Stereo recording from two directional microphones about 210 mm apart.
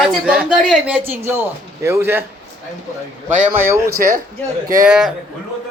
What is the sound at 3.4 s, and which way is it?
Speech, 10° right (ahead or behind).